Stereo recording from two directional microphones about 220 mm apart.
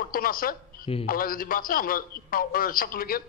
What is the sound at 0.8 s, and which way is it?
Speech, 25° left (ahead or behind).